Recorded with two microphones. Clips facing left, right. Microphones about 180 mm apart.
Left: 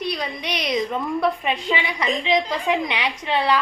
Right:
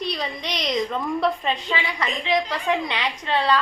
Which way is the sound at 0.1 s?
5° left (ahead or behind).